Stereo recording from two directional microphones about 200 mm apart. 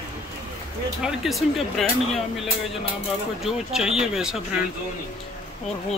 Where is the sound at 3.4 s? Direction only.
Centre (ahead or behind).